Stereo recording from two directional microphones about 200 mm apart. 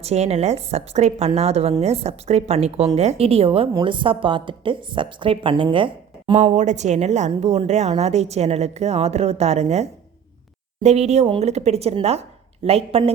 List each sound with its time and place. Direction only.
0.0 s a woman's voice: 30° right (ahead or behind)